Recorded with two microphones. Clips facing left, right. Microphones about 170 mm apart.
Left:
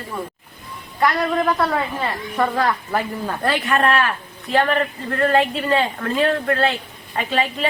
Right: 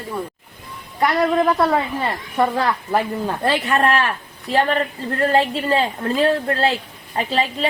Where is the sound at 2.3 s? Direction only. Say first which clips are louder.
Right 1 dB; 25° right (ahead or behind).